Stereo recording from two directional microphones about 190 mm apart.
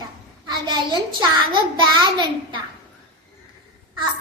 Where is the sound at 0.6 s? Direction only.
25° right (ahead or behind).